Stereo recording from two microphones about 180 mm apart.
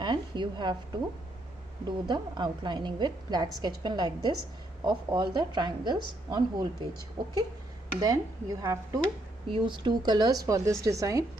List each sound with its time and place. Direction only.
0.0 s a woman's voice: 25° right (ahead or behind)
1.9 s a woman's voice: 25° right (ahead or behind)